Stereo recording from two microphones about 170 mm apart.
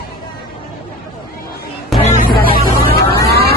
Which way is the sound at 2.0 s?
45° left (ahead or behind).